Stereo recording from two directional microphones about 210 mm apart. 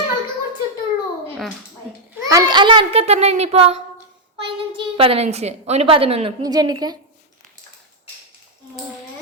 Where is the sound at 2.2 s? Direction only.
20° right (ahead or behind).